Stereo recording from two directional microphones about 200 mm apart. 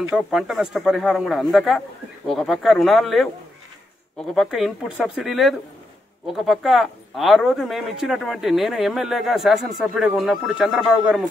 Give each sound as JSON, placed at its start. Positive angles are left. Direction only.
{"t": 0.1, "sound": "speech", "side_deg": 0}
{"t": 4.4, "sound": "speech", "side_deg": 0}